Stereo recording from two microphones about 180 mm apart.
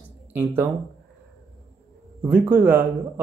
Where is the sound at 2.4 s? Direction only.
10° right (ahead or behind).